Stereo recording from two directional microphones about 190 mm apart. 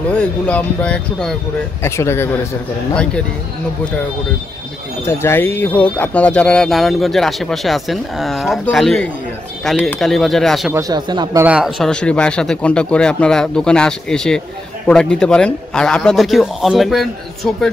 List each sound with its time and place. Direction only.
0.1 s speech: 5° left (ahead or behind)
5.0 s speech: 10° left (ahead or behind)
10.7 s speech: 20° right (ahead or behind)
11.4 s speech: 5° right (ahead or behind)